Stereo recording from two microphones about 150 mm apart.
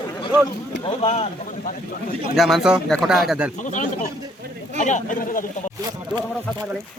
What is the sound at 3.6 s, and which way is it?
Speech, 55° left (ahead or behind).